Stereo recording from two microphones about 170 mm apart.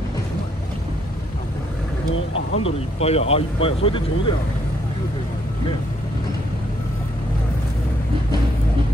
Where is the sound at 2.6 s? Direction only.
35° left (ahead or behind).